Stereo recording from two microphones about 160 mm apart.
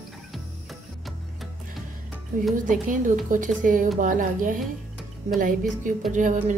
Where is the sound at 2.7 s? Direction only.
55° right (ahead or behind).